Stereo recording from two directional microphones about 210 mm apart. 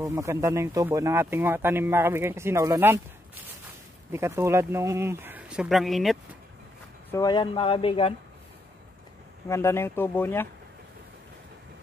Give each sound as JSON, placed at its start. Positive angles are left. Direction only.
{"t": 0.0, "sound": "speech", "side_deg": -15}
{"t": 7.1, "sound": "speech", "side_deg": 20}
{"t": 9.5, "sound": "speech", "side_deg": 10}